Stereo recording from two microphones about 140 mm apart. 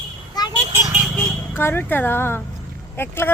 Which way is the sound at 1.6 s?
15° left (ahead or behind).